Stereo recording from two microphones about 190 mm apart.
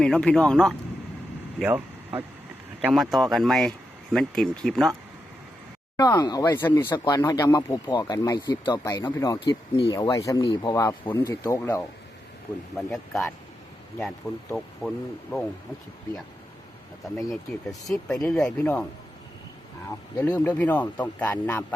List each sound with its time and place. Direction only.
0.0 s speech: 5° left (ahead or behind)
1.5 s vehicle: 5° right (ahead or behind)
2.8 s speech: centre (ahead or behind)
6.0 s speech: 20° left (ahead or behind)
12.7 s speech: centre (ahead or behind)
14.5 s speech: centre (ahead or behind)
18.1 s speech: centre (ahead or behind)
20.1 s speech: 10° left (ahead or behind)